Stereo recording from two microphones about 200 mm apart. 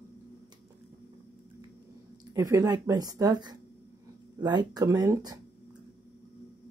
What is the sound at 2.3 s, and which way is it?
Speech, 15° right (ahead or behind).